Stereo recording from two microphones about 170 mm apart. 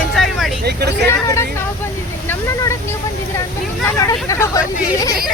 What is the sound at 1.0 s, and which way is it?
Vehicle, 15° left (ahead or behind).